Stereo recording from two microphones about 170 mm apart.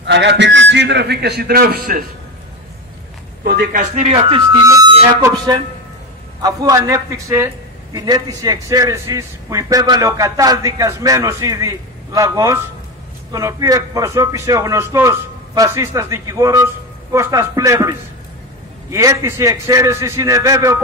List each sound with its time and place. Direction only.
0.0 s a man's voice: 90° right; by 2.0 s 60° right (ahead or behind)
3.7 s speech: 45° right (ahead or behind)
4.2 s speech: 30° right (ahead or behind)
4.6 s harmonica: 20° right (ahead or behind)
5.2 s a man's voice: 20° right (ahead or behind)